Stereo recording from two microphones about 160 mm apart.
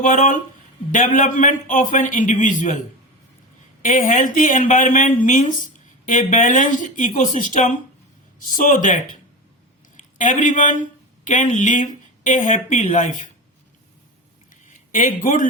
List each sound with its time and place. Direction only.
0.0 s speech: 55° left (ahead or behind)
3.8 s speech: 55° left (ahead or behind)
10.0 s speech: 55° left (ahead or behind)
14.5 s a sound: 55° left (ahead or behind)